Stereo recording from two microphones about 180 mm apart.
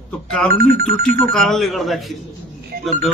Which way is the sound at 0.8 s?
Centre (ahead or behind).